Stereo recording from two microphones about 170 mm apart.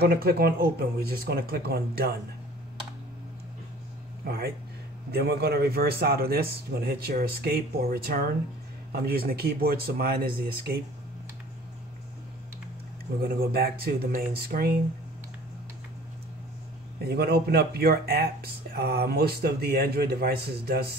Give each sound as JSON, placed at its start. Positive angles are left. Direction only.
{"t": 0.0, "sound": "speech", "side_deg": -65}
{"t": 4.2, "sound": "speech", "side_deg": -65}
{"t": 13.2, "sound": "speech", "side_deg": -65}
{"t": 17.0, "sound": "speech", "side_deg": -70}